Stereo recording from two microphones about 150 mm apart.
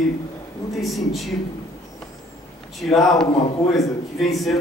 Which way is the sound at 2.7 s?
Centre (ahead or behind).